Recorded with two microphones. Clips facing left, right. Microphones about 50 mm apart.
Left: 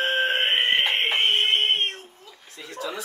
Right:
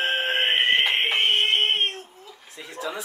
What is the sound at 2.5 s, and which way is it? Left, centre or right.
Chuckle, centre.